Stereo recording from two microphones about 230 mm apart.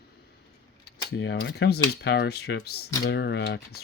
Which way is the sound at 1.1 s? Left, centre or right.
Left.